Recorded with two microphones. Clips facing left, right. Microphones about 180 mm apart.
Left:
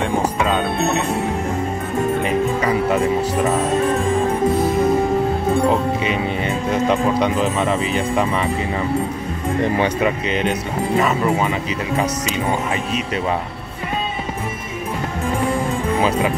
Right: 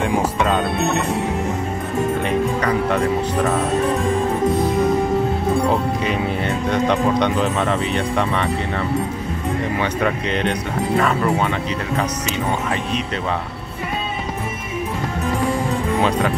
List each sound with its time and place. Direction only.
0.4 s speech: centre (ahead or behind)
2.2 s speech: 5° left (ahead or behind)
5.7 s speech: centre (ahead or behind)
9.9 s speech: 5° left (ahead or behind)
16.0 s speech: 5° left (ahead or behind)